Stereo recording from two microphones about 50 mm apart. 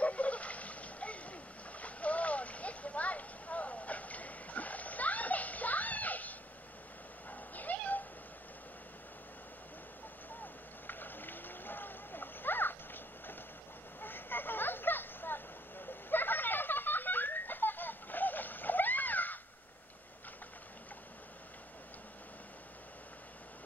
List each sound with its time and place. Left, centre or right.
0.0 s boat: left
7.2 s cat: left
10.4 s vehicle: left